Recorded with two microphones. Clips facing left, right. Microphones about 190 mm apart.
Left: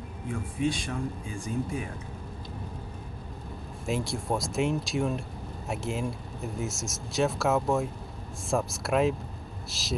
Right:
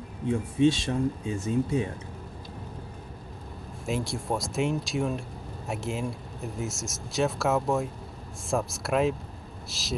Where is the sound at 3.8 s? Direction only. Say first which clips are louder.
Even; centre (ahead or behind).